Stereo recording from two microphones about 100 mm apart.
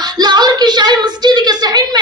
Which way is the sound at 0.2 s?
45° right (ahead or behind).